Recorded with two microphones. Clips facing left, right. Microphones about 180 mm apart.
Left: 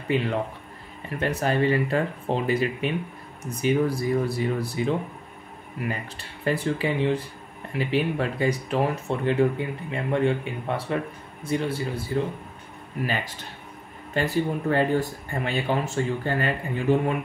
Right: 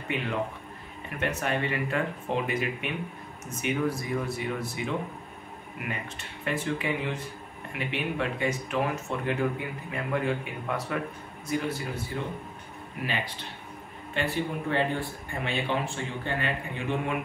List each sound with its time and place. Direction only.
0.1 s a man's voice: 35° left (ahead or behind)
13.0 s speech: 45° left (ahead or behind)